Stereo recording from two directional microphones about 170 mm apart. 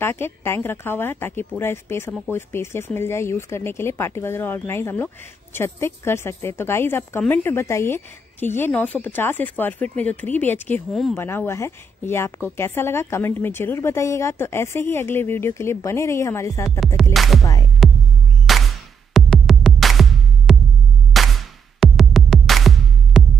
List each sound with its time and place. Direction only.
0.0 s speech: 15° left (ahead or behind)
10.9 s music: centre (ahead or behind)
11.1 s speech: 15° left (ahead or behind)
16.8 s music: centre (ahead or behind)